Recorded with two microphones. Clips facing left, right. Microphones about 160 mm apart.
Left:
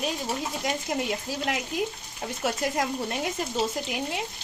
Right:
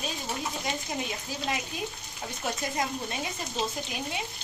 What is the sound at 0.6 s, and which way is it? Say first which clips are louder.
A woman's voice: left 4 dB; 80° left.